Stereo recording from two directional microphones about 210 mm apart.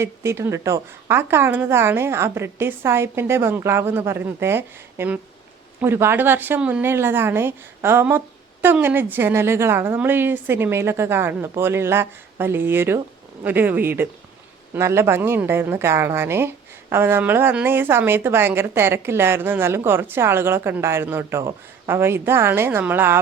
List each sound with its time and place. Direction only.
0.0 s a woman's voice: 10° right (ahead or behind)